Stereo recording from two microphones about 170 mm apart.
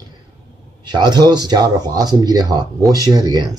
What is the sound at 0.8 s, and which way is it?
Speech, 25° right (ahead or behind).